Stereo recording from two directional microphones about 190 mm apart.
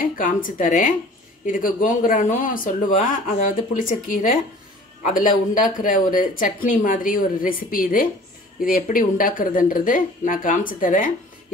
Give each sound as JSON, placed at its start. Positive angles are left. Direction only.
{"t": 0.0, "sound": "speech", "side_deg": 45}